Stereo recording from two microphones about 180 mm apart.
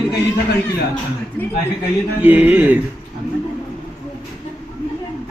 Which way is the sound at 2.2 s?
10° right (ahead or behind).